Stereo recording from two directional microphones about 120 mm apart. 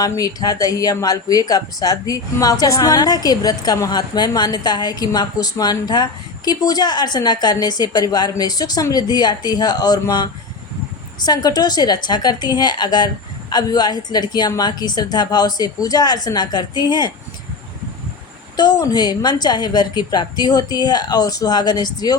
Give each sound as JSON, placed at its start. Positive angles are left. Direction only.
{"t": 0.0, "sound": "speech", "side_deg": 30}
{"t": 18.5, "sound": "speech", "side_deg": 35}